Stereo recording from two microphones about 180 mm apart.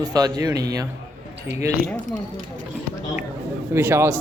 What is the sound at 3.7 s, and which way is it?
Speech, 15° right (ahead or behind).